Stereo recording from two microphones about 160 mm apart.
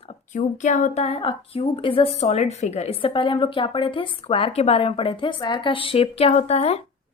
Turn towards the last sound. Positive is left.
turn(degrees=40)  # may be behind; listen again after turning